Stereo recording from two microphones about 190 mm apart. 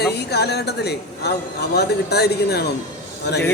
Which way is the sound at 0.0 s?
60° left (ahead or behind).